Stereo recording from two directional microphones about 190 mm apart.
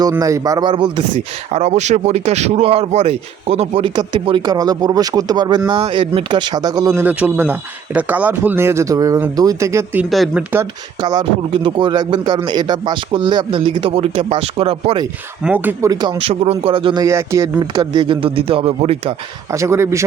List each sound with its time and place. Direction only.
0.0 s speech: 15° right (ahead or behind)
10.1 s speech: centre (ahead or behind)
10.5 s speech: 15° right (ahead or behind)
15.4 s speech: 10° right (ahead or behind); by 19.1 s 30° right (ahead or behind)
19.5 s speech: 15° right (ahead or behind)